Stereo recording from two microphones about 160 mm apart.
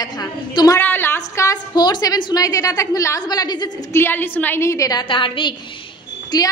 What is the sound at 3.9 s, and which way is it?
A woman's voice, 15° left (ahead or behind).